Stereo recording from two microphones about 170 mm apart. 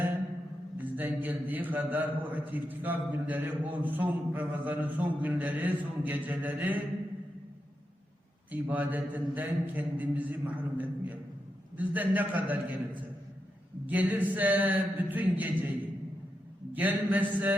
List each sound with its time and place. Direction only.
0.9 s a man's voice: 10° right (ahead or behind)
8.5 s a man's voice: 10° right (ahead or behind)
16.7 s a man's voice: 10° right (ahead or behind)